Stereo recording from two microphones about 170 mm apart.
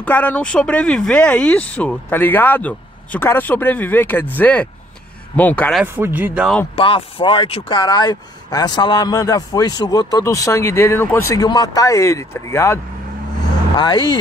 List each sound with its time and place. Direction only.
0.0 s speech: 10° left (ahead or behind)
5.8 s speech: 10° right (ahead or behind)
6.8 s speech: 30° left (ahead or behind)